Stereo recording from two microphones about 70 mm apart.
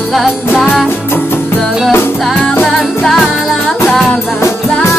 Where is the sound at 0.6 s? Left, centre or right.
Centre.